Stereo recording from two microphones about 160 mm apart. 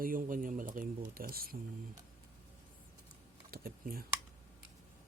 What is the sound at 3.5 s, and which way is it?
Typing, 65° right (ahead or behind).